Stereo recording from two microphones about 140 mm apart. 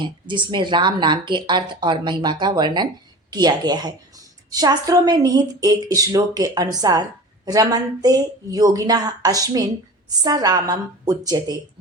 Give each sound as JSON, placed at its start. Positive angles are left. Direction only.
{"t": 0.0, "sound": "a woman's voice", "side_deg": -35}